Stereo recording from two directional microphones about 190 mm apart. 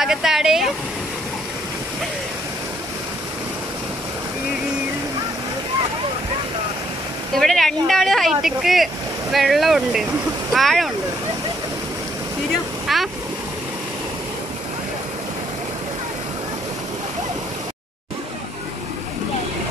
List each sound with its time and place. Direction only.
0.0 s speech: centre (ahead or behind)
7.3 s speech: centre (ahead or behind)
12.8 s waves: centre (ahead or behind)